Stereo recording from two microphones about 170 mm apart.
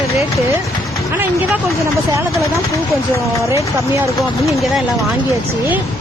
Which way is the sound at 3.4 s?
15° right (ahead or behind).